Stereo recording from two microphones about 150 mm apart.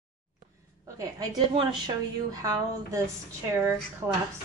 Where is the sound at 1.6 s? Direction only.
30° right (ahead or behind).